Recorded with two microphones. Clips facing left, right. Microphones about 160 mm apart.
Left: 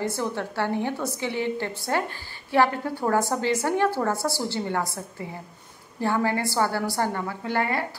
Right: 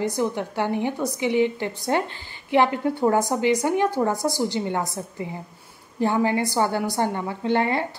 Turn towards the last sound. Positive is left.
turn(degrees=-25)  # may be behind; listen again after turning